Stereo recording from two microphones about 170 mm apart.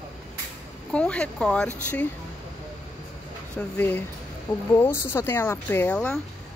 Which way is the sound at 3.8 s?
10° left (ahead or behind).